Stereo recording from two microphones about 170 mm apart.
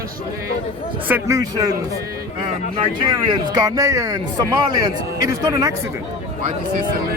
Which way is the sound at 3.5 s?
20° right (ahead or behind).